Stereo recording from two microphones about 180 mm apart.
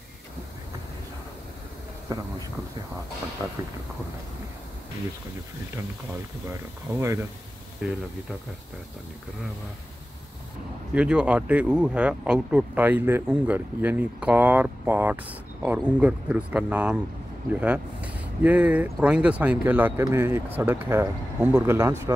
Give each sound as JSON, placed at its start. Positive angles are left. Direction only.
{"t": 3.4, "sound": "speech", "side_deg": -20}
{"t": 6.9, "sound": "speech", "side_deg": -15}
{"t": 11.0, "sound": "speech", "side_deg": -5}